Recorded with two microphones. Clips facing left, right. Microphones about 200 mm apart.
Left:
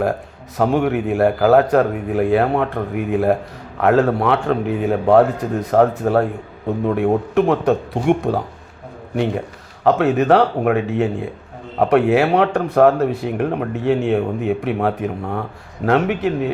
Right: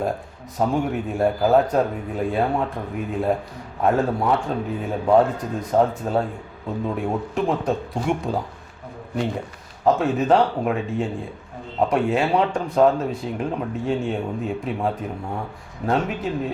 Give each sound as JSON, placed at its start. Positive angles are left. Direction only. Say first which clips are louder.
{"t": 0.5, "sound": "speech", "louder": "left 5 dB", "side_deg": 75}
{"t": 9.8, "sound": "speech", "louder": "left 4 dB", "side_deg": 70}